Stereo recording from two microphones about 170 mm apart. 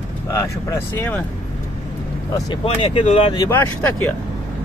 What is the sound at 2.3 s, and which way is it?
Speech, 25° left (ahead or behind).